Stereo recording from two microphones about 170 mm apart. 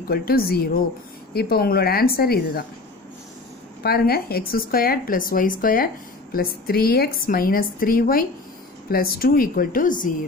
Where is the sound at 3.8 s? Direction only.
65° left (ahead or behind).